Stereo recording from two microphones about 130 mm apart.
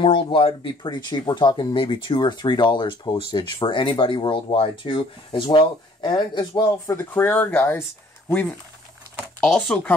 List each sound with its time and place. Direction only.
0.0 s speech: 40° left (ahead or behind)
7.0 s speech: 15° left (ahead or behind)